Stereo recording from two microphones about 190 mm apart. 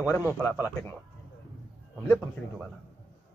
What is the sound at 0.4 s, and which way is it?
Speech, 15° left (ahead or behind).